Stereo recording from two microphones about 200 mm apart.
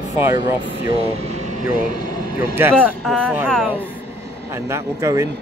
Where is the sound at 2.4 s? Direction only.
10° right (ahead or behind).